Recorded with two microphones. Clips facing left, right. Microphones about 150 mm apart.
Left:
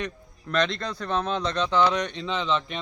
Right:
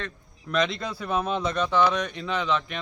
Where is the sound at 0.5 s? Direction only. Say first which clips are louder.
Even; 5° right (ahead or behind).